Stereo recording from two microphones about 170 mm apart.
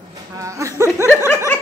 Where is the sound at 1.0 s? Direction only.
15° left (ahead or behind).